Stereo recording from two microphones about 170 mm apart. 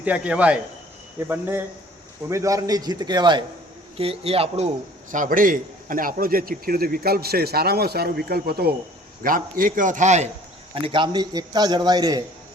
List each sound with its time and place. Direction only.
0.0 s a man's voice: 10° right (ahead or behind); by 4.7 s 35° right (ahead or behind)
5.1 s a man's voice: 50° right (ahead or behind)
9.2 s a man's voice: 55° right (ahead or behind)
10.8 s a man's voice: 30° right (ahead or behind)